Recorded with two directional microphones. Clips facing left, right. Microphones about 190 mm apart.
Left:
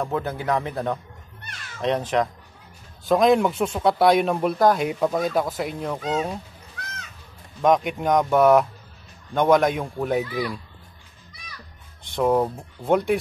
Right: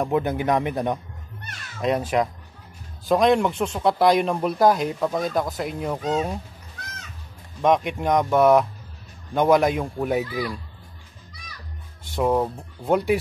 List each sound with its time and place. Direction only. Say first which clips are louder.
0.0 s speech: right 4 dB; 15° right (ahead or behind); by 6.4 s centre (ahead or behind)
7.6 s speech: left 1 dB; centre (ahead or behind)
12.0 s speech: left 1 dB; 5° right (ahead or behind)